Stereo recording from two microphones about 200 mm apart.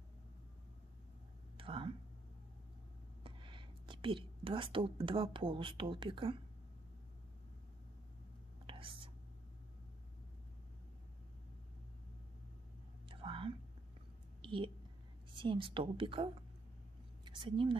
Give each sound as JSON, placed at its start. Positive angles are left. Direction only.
{"t": 1.6, "sound": "a sound", "side_deg": -25}
{"t": 3.3, "sound": "speech", "side_deg": -25}
{"t": 8.6, "sound": "whispering", "side_deg": -25}
{"t": 13.1, "sound": "whispering", "side_deg": -25}
{"t": 14.4, "sound": "a sound", "side_deg": -25}
{"t": 15.3, "sound": "a woman's voice", "side_deg": -25}